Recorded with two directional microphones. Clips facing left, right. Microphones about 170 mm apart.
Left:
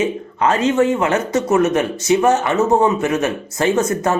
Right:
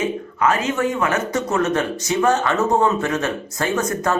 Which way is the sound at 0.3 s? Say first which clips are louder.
Left 5 dB; 25° left (ahead or behind).